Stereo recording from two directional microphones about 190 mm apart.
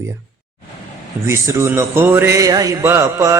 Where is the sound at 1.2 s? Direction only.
15° right (ahead or behind).